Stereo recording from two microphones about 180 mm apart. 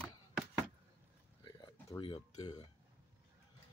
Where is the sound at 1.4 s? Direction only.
25° left (ahead or behind).